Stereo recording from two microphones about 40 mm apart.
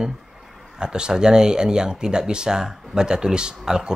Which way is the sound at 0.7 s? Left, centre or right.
Centre.